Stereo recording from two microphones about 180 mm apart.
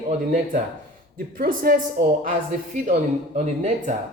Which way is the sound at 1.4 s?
55° right (ahead or behind).